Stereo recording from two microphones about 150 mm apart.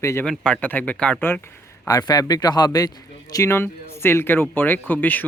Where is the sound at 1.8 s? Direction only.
25° left (ahead or behind).